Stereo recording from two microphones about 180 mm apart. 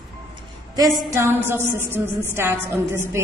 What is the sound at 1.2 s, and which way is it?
A woman's voice, 15° right (ahead or behind).